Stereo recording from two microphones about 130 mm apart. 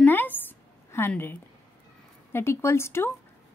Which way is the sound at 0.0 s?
15° left (ahead or behind).